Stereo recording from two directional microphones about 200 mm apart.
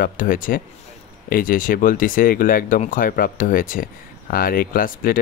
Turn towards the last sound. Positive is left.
turn(degrees=45)  # may be behind; listen again after turning